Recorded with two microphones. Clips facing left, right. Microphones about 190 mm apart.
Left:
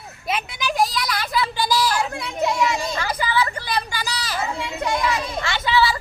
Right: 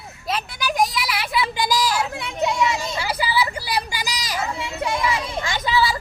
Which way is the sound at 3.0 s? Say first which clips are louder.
Right 1 dB; 10° right (ahead or behind).